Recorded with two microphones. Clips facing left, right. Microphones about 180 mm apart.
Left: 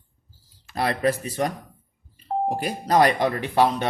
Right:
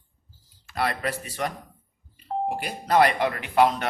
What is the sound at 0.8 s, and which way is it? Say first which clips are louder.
Speech: left 5 dB; 35° left (ahead or behind).